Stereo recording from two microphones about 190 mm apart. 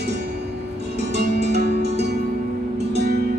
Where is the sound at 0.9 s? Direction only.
60° right (ahead or behind).